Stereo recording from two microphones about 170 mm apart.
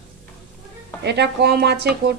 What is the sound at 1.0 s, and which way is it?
A woman's voice, 80° right.